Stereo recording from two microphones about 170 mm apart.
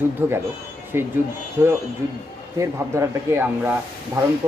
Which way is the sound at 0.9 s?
15° right (ahead or behind).